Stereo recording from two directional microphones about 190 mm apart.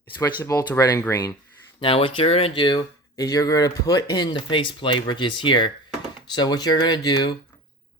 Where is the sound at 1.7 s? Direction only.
30° left (ahead or behind).